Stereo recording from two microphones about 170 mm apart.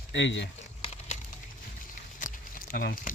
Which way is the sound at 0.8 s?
40° left (ahead or behind).